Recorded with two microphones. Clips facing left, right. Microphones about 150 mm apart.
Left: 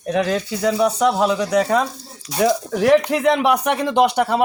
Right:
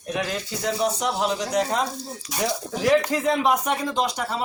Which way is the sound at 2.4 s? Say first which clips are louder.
Left 7 dB; 65° left (ahead or behind).